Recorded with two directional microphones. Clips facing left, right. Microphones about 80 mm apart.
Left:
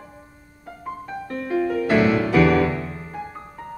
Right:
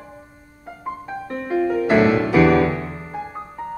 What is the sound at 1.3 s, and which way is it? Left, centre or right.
Music, right.